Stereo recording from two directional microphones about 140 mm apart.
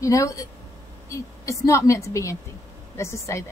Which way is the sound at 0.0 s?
25° left (ahead or behind).